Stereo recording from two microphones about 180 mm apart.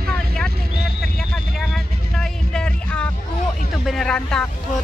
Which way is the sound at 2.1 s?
5° left (ahead or behind).